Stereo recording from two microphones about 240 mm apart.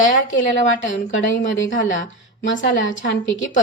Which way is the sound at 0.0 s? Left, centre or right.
Left.